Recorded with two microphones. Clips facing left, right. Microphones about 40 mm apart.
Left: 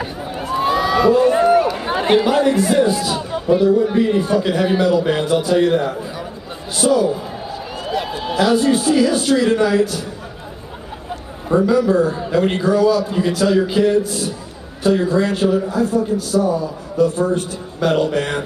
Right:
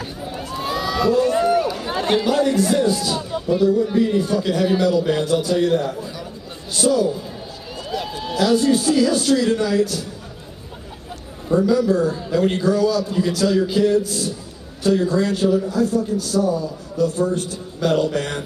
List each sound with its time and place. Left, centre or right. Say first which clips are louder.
0.0 s run: left 4 dB; left
1.8 s a man's voice: left 5 dB; left
11.4 s speech: left 2 dB; left